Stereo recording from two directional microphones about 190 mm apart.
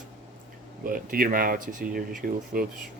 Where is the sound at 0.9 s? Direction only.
50° right (ahead or behind).